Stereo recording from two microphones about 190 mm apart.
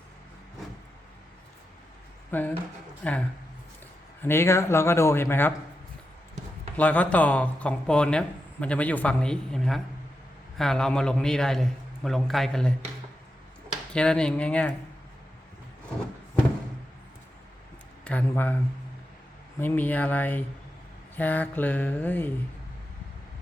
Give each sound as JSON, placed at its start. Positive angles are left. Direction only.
{"t": 2.3, "sound": "speech", "side_deg": 10}
{"t": 6.7, "sound": "a man's voice", "side_deg": 5}
{"t": 13.9, "sound": "a man's voice", "side_deg": 5}
{"t": 18.0, "sound": "speech", "side_deg": 5}
{"t": 19.5, "sound": "speech", "side_deg": 10}